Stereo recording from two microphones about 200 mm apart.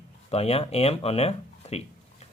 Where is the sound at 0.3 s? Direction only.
30° left (ahead or behind).